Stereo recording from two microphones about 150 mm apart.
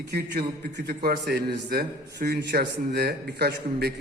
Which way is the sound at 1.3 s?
85° right.